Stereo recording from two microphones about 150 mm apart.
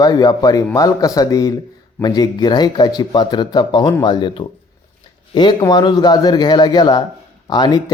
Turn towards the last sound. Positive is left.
turn(degrees=30)  # may be behind; listen again after turning